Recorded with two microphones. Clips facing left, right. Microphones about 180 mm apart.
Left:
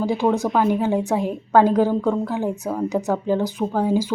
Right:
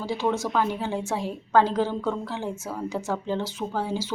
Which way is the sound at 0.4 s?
45° left (ahead or behind).